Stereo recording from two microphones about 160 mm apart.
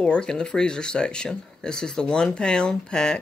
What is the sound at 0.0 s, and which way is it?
Speech, 5° left (ahead or behind).